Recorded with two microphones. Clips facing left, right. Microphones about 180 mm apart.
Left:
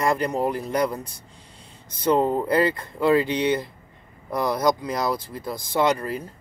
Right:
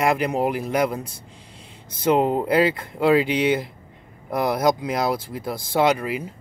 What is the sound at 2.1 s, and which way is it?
Speech, 20° right (ahead or behind).